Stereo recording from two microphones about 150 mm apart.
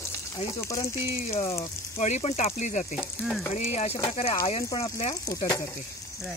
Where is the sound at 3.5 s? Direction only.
50° left (ahead or behind).